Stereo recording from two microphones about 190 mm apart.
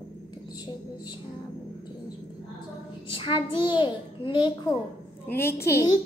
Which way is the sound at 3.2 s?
25° left (ahead or behind).